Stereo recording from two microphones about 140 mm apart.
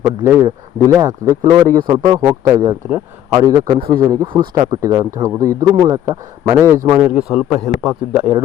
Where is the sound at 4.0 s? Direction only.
25° right (ahead or behind).